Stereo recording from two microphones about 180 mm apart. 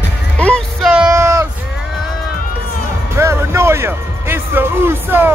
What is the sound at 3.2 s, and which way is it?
Music, 15° right (ahead or behind).